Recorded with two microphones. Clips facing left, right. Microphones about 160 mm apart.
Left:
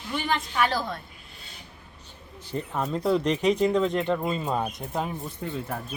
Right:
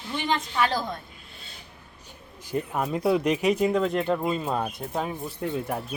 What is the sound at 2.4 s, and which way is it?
Speech, 10° right (ahead or behind).